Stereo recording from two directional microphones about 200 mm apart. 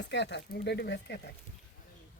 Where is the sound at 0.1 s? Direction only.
60° left (ahead or behind).